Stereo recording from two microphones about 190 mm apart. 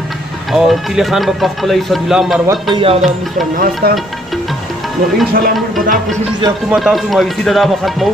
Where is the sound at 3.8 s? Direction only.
55° right (ahead or behind).